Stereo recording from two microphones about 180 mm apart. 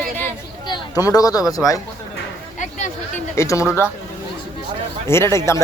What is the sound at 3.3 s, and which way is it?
Speech, 15° left (ahead or behind).